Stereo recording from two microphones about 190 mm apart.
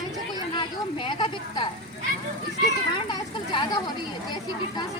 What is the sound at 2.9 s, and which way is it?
Speech, 25° left (ahead or behind).